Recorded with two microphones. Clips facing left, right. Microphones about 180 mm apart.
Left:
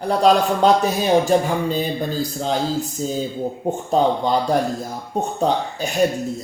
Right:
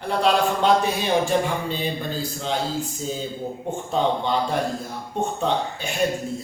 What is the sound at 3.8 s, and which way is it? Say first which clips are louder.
A man's voice: left 4 dB; 40° left (ahead or behind).